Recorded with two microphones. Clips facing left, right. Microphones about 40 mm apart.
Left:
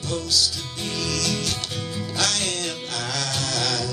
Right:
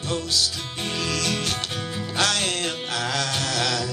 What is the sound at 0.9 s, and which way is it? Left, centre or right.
Music, right.